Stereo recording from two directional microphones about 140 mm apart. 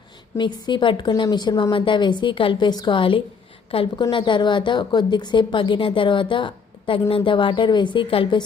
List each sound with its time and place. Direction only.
0.3 s a woman's voice: 30° left (ahead or behind)